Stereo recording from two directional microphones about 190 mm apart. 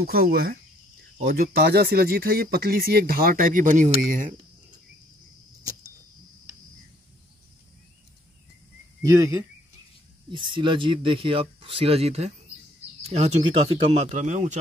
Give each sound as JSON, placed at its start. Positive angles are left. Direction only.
{"t": 0.0, "sound": "speech", "side_deg": -50}
{"t": 9.0, "sound": "speech", "side_deg": -15}